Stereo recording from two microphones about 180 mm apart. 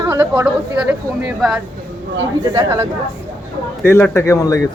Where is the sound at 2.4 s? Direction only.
20° right (ahead or behind).